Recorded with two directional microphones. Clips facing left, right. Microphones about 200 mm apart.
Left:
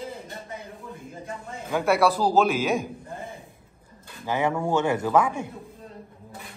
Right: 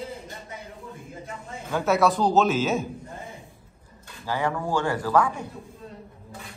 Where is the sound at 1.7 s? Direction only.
10° left (ahead or behind).